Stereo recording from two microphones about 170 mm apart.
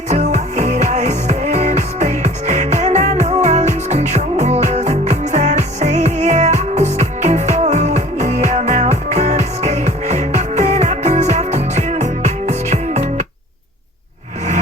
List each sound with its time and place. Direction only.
0.1 s music: 45° right (ahead or behind)